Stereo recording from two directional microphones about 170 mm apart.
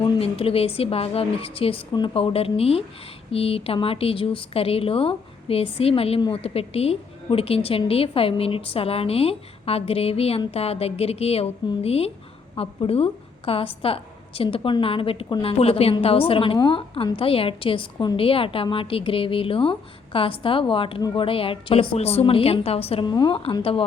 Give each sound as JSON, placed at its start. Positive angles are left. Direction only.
{"t": 0.0, "sound": "speech", "side_deg": 35}